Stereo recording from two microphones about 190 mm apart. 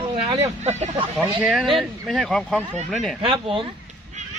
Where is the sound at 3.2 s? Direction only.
25° right (ahead or behind).